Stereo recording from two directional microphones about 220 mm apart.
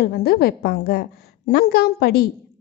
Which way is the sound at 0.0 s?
45° left (ahead or behind).